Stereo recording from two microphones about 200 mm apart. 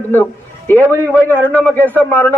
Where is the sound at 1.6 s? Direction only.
10° left (ahead or behind).